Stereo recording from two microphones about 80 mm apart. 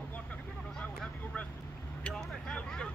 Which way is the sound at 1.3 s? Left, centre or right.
Centre.